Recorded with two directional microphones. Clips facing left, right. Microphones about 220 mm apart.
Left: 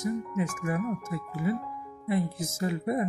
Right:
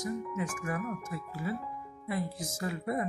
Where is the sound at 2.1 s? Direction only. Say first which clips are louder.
Left 6 dB; 25° left (ahead or behind).